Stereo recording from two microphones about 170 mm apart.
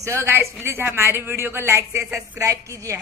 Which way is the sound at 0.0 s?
15° right (ahead or behind).